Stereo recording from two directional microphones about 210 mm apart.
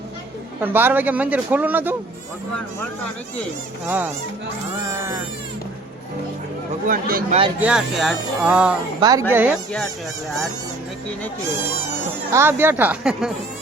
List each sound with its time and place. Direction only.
0.6 s a man's voice: 10° right (ahead or behind)
3.8 s a man's voice: 10° right (ahead or behind)
6.8 s speech: 45° right (ahead or behind)
7.6 s speech: 5° right (ahead or behind)
9.0 s speech: 20° right (ahead or behind)
9.3 s speech: 5° right (ahead or behind)
12.3 s a man's voice: 10° right (ahead or behind)